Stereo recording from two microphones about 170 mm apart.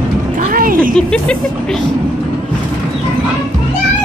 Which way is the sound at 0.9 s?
5° left (ahead or behind).